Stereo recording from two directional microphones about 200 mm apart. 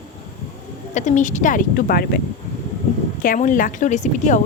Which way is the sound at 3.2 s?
40° left (ahead or behind).